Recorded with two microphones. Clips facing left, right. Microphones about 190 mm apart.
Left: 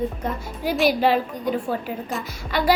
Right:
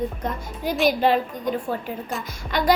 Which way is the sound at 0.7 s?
5° left (ahead or behind).